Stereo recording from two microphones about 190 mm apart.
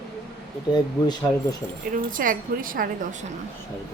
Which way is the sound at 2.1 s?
45° right (ahead or behind).